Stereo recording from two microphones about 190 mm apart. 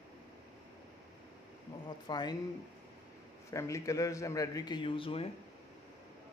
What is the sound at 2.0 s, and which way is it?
Speech, 20° left (ahead or behind).